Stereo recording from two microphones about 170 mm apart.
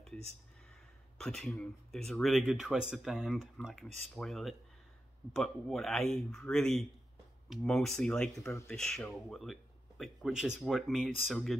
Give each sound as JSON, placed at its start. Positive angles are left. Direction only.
{"t": 1.1, "sound": "speech", "side_deg": 5}